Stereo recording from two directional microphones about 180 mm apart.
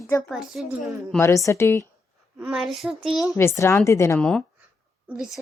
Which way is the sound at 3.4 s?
15° left (ahead or behind).